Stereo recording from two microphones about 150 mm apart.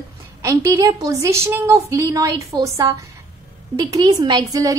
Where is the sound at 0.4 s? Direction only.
20° right (ahead or behind).